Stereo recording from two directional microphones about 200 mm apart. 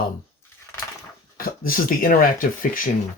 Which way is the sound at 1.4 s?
45° left (ahead or behind).